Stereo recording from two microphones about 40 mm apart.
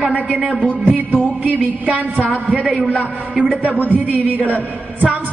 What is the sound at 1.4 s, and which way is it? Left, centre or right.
Speech, right.